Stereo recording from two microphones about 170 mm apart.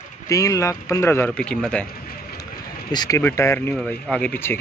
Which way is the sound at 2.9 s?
25° left (ahead or behind).